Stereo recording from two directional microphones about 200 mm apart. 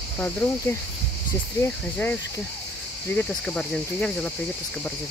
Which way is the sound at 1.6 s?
10° left (ahead or behind).